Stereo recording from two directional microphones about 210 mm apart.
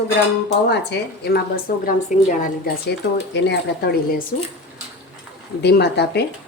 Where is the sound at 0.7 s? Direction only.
50° left (ahead or behind); by 2.3 s 35° left (ahead or behind).